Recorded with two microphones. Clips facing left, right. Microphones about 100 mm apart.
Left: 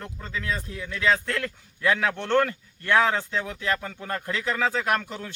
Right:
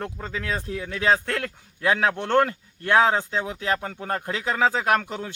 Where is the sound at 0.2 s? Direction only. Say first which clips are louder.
Right 2 dB; 40° right (ahead or behind).